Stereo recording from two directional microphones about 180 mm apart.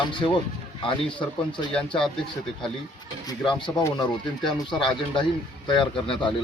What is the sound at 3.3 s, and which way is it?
Speech, 25° left (ahead or behind).